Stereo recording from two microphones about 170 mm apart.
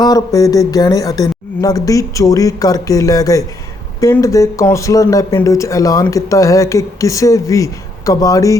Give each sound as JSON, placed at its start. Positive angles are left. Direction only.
{"t": 0.0, "sound": "speech", "side_deg": 20}